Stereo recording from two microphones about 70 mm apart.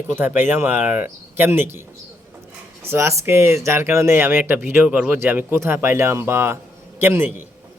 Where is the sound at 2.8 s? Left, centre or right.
Right.